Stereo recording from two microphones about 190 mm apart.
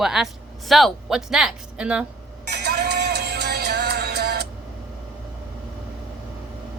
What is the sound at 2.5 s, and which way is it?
Music, 60° right (ahead or behind).